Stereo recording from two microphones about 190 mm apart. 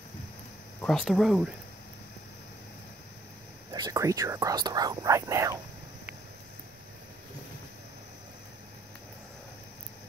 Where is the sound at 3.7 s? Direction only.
20° right (ahead or behind).